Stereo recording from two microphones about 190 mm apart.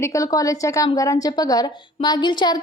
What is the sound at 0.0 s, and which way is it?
A woman's voice, 15° left (ahead or behind).